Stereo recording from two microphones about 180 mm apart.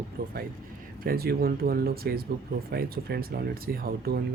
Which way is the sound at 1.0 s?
55° right (ahead or behind).